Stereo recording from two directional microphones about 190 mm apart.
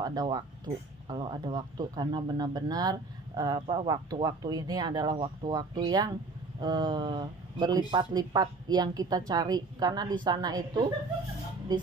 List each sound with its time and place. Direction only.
0.0 s speech: 20° right (ahead or behind)